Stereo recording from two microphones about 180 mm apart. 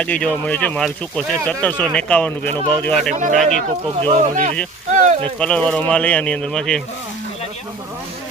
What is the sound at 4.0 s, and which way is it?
Speech, 30° right (ahead or behind).